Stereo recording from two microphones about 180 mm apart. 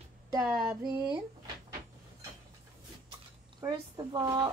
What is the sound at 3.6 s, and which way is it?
Speech, 20° right (ahead or behind).